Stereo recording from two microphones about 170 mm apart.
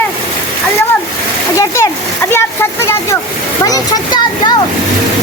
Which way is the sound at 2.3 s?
15° left (ahead or behind).